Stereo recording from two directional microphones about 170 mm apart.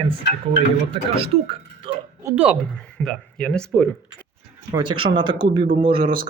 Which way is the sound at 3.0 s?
5° left (ahead or behind).